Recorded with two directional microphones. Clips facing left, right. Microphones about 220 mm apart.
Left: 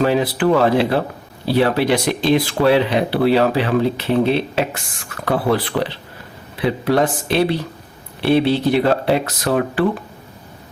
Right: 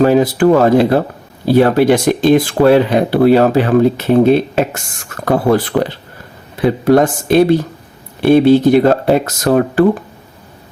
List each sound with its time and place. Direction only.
0.0 s speech: 45° right (ahead or behind)